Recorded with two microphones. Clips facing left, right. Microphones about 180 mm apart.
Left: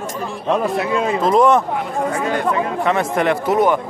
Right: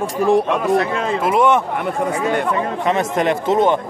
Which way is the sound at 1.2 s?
5° right (ahead or behind).